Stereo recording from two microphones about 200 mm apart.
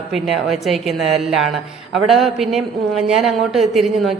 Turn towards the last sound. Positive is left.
turn(degrees=0)  # may be behind; listen again after turning